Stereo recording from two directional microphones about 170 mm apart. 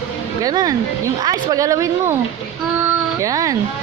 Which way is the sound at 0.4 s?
20° right (ahead or behind).